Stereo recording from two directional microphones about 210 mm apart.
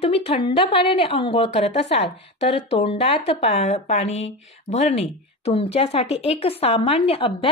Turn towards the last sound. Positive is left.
turn(degrees=25)  # may be behind; listen again after turning